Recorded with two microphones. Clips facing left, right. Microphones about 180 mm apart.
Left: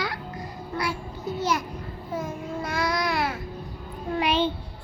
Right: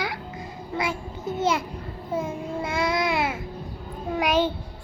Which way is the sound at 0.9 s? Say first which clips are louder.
Right 1 dB; 50° right (ahead or behind).